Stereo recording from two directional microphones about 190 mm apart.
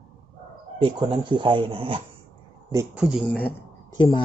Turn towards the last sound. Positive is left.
turn(degrees=25)  # may be behind; listen again after turning